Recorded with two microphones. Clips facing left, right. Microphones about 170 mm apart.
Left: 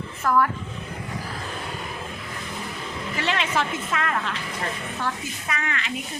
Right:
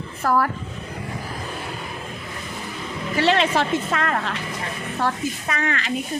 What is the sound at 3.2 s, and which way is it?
A woman's voice, 35° right (ahead or behind).